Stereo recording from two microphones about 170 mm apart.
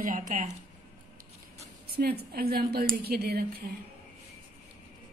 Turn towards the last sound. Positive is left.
turn(degrees=-65)  # may be behind; listen again after turning